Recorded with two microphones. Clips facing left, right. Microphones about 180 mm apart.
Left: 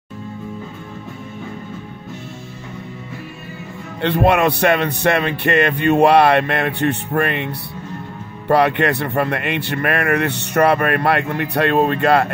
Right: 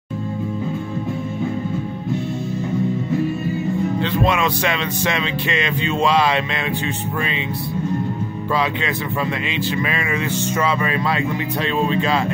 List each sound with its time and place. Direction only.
4.0 s speech: 65° left (ahead or behind)
8.5 s speech: 65° left (ahead or behind)